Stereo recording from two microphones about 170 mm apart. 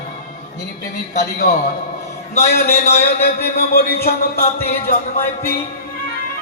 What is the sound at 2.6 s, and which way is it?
Speech, 40° left (ahead or behind).